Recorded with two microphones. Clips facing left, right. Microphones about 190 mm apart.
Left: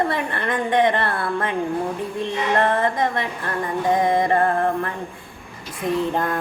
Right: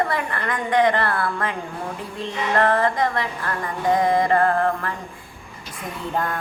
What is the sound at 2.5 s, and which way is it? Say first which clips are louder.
A woman's voice: right 1 dB; 20° left (ahead or behind).